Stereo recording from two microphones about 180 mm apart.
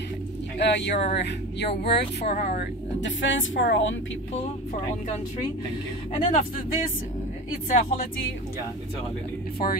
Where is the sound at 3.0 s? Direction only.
90° left.